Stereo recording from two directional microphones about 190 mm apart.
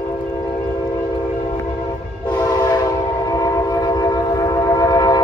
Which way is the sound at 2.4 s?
20° left (ahead or behind).